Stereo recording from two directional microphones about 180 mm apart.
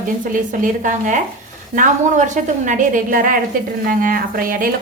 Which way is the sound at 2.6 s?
45° right (ahead or behind).